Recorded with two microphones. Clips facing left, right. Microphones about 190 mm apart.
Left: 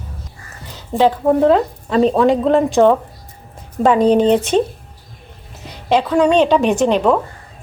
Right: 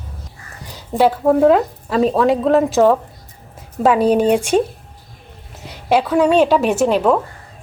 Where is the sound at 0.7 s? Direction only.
10° right (ahead or behind).